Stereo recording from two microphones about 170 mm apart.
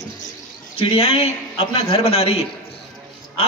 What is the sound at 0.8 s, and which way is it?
A man's voice, 35° left (ahead or behind).